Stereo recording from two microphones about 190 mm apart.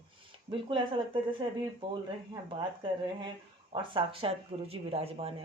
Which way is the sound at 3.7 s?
25° right (ahead or behind).